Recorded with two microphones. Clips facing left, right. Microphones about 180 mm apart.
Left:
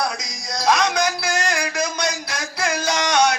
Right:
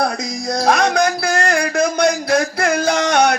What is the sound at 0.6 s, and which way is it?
Music, 55° right (ahead or behind).